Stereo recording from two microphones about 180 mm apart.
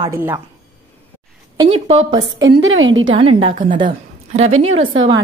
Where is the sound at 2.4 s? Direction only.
90° right.